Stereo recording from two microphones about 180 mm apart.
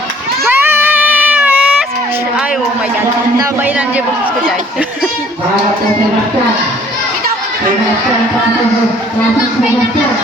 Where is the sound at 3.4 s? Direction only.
10° right (ahead or behind).